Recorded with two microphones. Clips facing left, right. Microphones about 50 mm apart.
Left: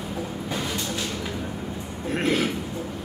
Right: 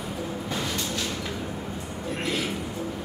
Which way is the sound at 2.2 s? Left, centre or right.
Left.